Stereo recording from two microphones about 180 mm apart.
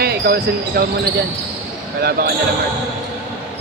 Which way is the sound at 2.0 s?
60° right (ahead or behind).